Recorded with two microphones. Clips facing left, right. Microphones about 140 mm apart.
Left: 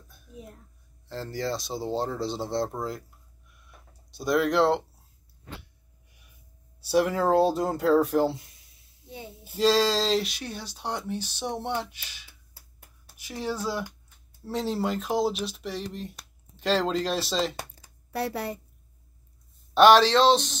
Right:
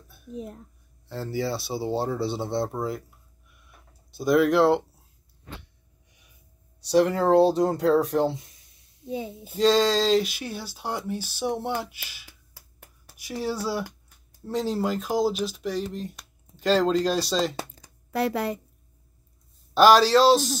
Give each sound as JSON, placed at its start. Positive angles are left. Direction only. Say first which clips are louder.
{"t": 1.0, "sound": "speech", "louder": "right 3 dB", "side_deg": -5}
{"t": 4.1, "sound": "speech", "louder": "right 4 dB", "side_deg": 0}
{"t": 6.8, "sound": "speech", "louder": "right 3 dB", "side_deg": 5}
{"t": 9.6, "sound": "speech", "louder": "right 2 dB", "side_deg": 0}
{"t": 12.3, "sound": "a sound", "louder": "right 4 dB", "side_deg": -90}
{"t": 13.2, "sound": "speech", "louder": "right 2 dB", "side_deg": -10}
{"t": 14.4, "sound": "speech", "louder": "right 2 dB", "side_deg": 0}
{"t": 19.7, "sound": "speech", "louder": "right 1 dB", "side_deg": 0}